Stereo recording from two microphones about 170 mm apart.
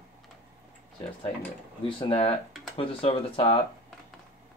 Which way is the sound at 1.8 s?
35° left (ahead or behind).